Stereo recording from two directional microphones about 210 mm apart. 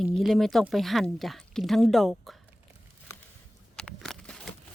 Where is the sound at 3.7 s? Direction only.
5° left (ahead or behind).